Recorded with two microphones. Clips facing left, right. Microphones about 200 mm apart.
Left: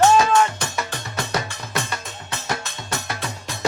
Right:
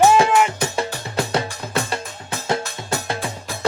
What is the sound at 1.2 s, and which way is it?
Music, 30° right (ahead or behind).